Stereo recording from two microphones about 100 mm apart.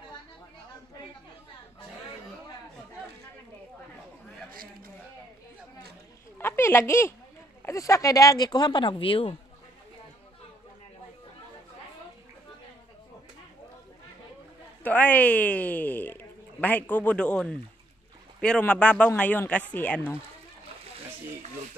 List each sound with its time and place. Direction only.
6.3 s a sound: 25° left (ahead or behind)
7.6 s speech: 30° left (ahead or behind); by 9.4 s 65° left (ahead or behind)
14.8 s speech: 15° left (ahead or behind)